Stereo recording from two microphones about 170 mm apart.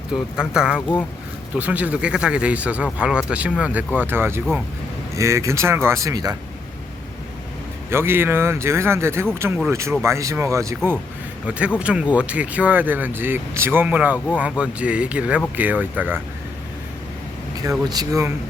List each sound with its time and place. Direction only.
0.1 s speech: 5° right (ahead or behind); by 6.3 s 20° right (ahead or behind)
7.9 s speech: 15° right (ahead or behind)
11.4 s speech: 5° right (ahead or behind)
17.6 s speech: 20° right (ahead or behind)